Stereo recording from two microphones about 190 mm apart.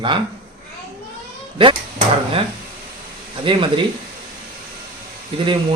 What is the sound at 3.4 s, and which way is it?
Speech, 25° right (ahead or behind).